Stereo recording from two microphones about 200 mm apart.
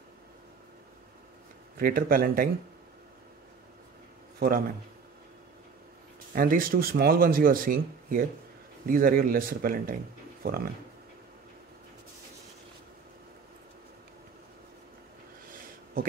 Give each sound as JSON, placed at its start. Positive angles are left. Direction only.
{"t": 1.8, "sound": "speech", "side_deg": -45}
{"t": 4.4, "sound": "a man's voice", "side_deg": -45}
{"t": 6.3, "sound": "speech", "side_deg": -45}
{"t": 15.5, "sound": "a sound", "side_deg": -45}